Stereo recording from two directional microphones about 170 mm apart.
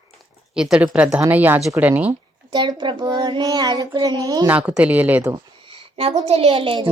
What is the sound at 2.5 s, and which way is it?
A child's voice, 25° right (ahead or behind).